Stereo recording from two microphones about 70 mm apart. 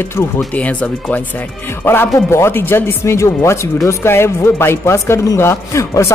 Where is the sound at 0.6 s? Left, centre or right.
Left.